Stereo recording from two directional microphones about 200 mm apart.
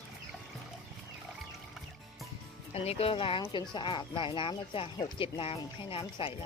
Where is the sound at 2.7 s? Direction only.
30° left (ahead or behind).